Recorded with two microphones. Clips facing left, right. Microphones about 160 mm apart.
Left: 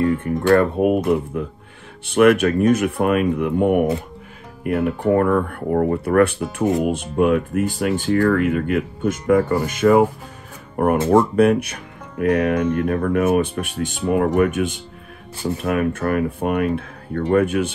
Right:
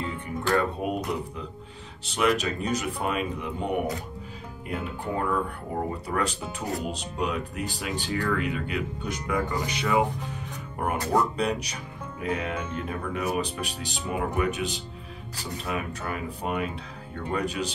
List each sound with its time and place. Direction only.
0.0 s speech: 65° left (ahead or behind)